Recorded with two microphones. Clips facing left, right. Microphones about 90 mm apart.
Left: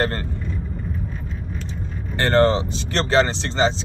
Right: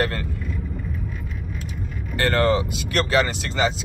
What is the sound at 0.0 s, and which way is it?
Vehicle, 35° left (ahead or behind).